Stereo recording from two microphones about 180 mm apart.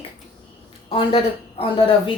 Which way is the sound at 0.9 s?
30° left (ahead or behind).